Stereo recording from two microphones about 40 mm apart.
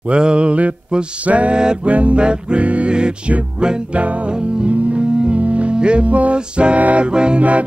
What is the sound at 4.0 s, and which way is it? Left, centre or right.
Music, right.